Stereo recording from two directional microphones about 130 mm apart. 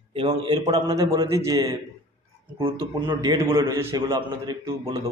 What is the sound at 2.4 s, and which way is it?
A man's voice, 40° right (ahead or behind).